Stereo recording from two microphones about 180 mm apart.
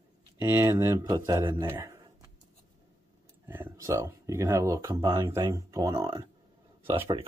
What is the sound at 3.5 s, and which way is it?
Speech, 10° right (ahead or behind).